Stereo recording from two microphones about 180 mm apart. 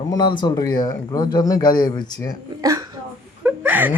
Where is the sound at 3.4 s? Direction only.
10° right (ahead or behind).